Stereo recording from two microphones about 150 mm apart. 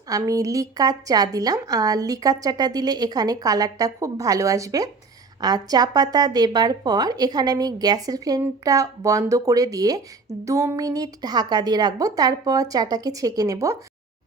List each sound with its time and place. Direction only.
0.1 s a woman's voice: 20° right (ahead or behind)